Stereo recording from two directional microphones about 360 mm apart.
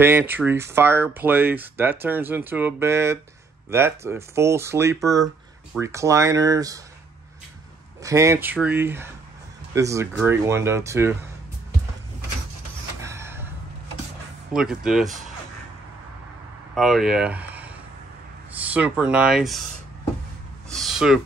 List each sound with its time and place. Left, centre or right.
0.0 s speech: centre
8.0 s speech: centre
13.0 s a sound: centre
14.5 s speech: centre
16.7 s speech: centre
20.7 s a sound: centre